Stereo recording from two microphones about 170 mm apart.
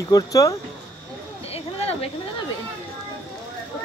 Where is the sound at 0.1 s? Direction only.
20° left (ahead or behind).